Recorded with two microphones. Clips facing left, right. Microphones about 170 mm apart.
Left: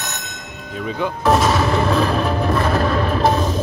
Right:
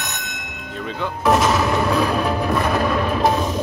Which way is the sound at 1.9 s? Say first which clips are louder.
Left 1 dB; 10° right (ahead or behind).